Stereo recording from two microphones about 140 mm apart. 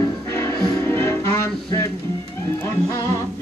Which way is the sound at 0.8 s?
20° left (ahead or behind).